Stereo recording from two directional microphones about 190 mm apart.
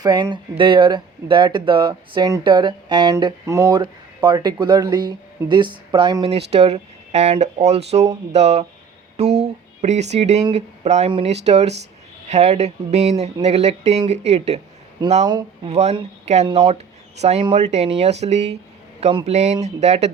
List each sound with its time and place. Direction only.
0.0 s speech: 25° right (ahead or behind)
9.8 s speech: 35° right (ahead or behind)
15.3 s speech: 20° right (ahead or behind)
15.7 s speech: 35° right (ahead or behind)